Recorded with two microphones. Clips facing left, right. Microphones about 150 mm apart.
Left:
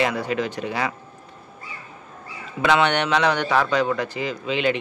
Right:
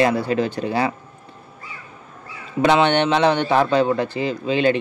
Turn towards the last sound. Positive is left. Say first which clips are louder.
# right 4 dB
turn(degrees=-35)  # may be behind; listen again after turning